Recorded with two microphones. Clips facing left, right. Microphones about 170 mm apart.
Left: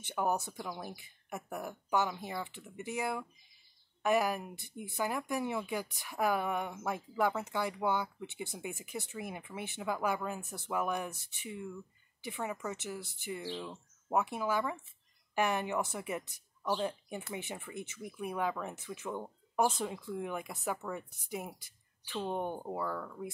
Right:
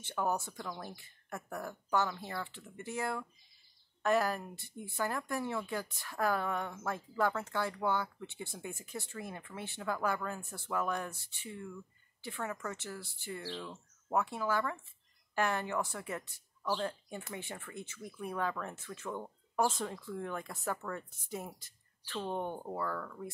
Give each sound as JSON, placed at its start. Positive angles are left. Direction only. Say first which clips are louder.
{"t": 0.0, "sound": "speech", "louder": "left 1 dB", "side_deg": 15}